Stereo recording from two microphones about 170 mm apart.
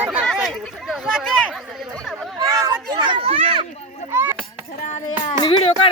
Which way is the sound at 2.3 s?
20° right (ahead or behind).